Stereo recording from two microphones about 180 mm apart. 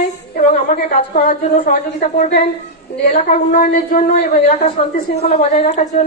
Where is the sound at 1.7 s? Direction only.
45° left (ahead or behind).